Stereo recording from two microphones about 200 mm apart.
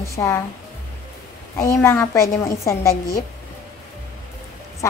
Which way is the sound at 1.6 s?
15° left (ahead or behind).